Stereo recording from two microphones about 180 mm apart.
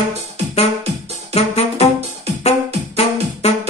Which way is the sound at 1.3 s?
35° left (ahead or behind).